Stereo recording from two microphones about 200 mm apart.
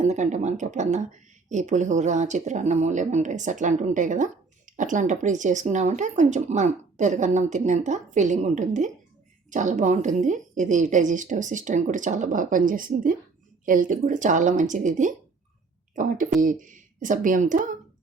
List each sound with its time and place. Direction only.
0.0 s speech: 35° right (ahead or behind)